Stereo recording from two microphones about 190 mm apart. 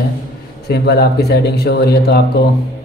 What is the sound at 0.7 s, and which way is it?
Speech, 60° left (ahead or behind).